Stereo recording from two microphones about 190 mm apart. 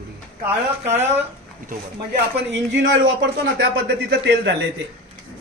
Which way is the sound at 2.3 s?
75° right (ahead or behind).